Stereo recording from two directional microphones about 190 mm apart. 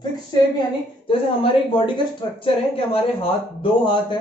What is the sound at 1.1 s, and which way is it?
Speech, 30° left (ahead or behind).